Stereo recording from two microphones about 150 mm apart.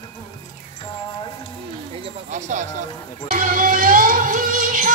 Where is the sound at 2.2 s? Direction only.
55° right (ahead or behind).